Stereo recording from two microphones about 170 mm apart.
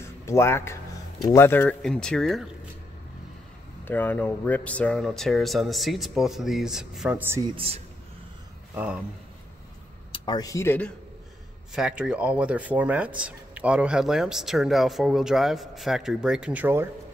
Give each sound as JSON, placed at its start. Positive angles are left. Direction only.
{"t": 0.0, "sound": "speech", "side_deg": 15}
{"t": 3.8, "sound": "speech", "side_deg": 10}
{"t": 7.5, "sound": "speech", "side_deg": -35}
{"t": 8.7, "sound": "speech", "side_deg": -5}
{"t": 10.1, "sound": "speech", "side_deg": 25}
{"t": 11.7, "sound": "speech", "side_deg": -5}